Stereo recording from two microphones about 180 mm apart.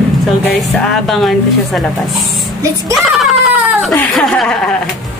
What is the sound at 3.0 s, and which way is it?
Baby cry, centre (ahead or behind).